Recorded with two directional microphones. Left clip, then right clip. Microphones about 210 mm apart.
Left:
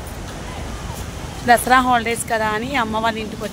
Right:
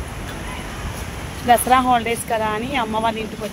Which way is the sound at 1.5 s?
5° left (ahead or behind).